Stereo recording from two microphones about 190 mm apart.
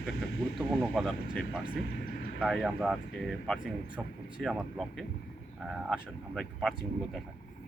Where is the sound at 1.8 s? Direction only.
55° left (ahead or behind).